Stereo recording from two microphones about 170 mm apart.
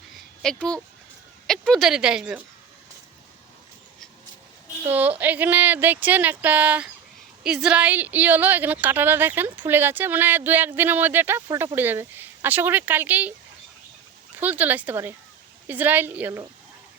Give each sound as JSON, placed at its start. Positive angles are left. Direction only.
{"t": 0.4, "sound": "speech", "side_deg": 5}
{"t": 4.9, "sound": "a woman's voice", "side_deg": -10}
{"t": 14.3, "sound": "a woman's voice", "side_deg": -10}